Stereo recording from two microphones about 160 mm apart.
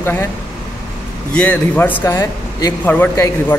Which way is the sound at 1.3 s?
5° left (ahead or behind).